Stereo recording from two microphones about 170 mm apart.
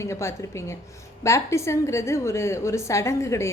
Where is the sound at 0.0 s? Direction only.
15° left (ahead or behind).